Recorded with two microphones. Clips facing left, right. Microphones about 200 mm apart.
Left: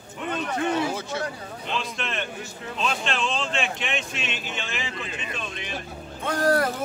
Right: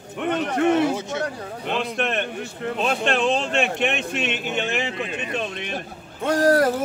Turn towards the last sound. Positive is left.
turn(degrees=-40)  # may be behind; listen again after turning